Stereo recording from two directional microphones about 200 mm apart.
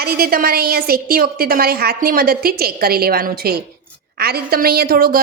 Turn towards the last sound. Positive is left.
turn(degrees=-50)  # may be behind; listen again after turning